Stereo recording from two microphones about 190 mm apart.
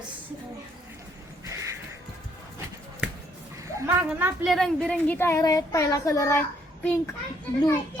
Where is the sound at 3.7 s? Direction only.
10° right (ahead or behind); by 6.4 s 15° left (ahead or behind).